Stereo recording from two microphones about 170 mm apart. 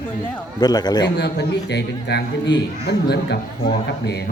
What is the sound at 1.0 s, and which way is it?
A man's voice, 80° left.